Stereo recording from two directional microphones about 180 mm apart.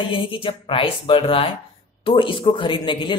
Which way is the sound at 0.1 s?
30° left (ahead or behind).